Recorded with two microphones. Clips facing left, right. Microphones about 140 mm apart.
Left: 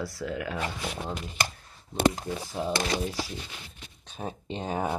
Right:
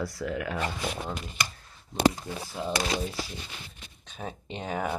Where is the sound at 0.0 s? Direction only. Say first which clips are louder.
Right 1 dB; 25° left (ahead or behind).